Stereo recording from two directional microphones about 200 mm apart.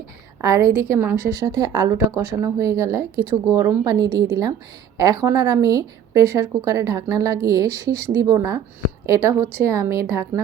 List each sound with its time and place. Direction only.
0.4 s speech: 15° right (ahead or behind)